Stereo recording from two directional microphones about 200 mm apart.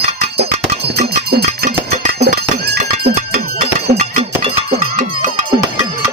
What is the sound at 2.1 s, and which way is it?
Music, 50° right (ahead or behind).